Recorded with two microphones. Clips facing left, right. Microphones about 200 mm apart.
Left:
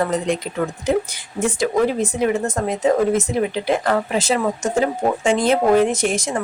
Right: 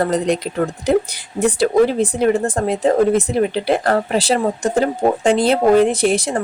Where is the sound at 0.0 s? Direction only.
35° right (ahead or behind).